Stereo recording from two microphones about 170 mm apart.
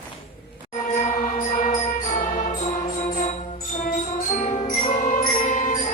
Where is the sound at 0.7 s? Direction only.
45° left (ahead or behind).